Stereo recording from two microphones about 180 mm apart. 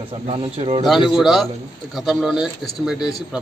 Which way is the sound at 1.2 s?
Centre (ahead or behind).